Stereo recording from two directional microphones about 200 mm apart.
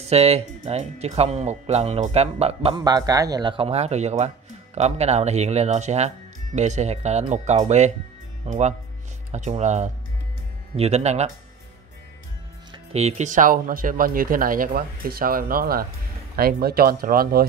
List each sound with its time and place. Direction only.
0.0 s speech: 30° right (ahead or behind)
2.7 s speech: 20° right (ahead or behind)
12.7 s speech: 30° right (ahead or behind); by 17.5 s 50° right (ahead or behind)